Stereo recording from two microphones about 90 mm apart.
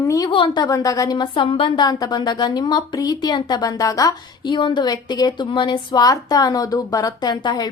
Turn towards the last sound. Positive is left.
turn(degrees=50)  # may be behind; listen again after turning